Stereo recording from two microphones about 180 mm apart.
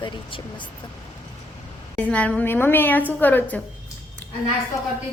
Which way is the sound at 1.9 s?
5° left (ahead or behind).